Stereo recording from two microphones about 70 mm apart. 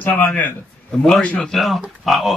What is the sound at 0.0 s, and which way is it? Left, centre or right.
A man's voice, left.